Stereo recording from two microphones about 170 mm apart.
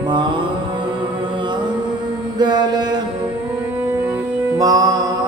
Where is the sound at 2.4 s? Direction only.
25° right (ahead or behind).